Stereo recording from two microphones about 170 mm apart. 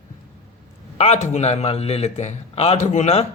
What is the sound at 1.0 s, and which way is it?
A man's voice, 40° left (ahead or behind).